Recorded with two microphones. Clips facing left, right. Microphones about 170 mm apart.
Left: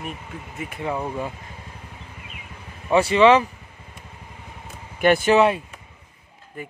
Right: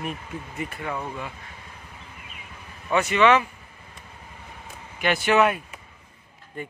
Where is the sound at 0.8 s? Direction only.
25° left (ahead or behind).